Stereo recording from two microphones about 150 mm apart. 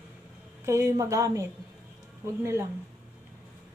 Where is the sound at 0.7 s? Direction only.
20° right (ahead or behind).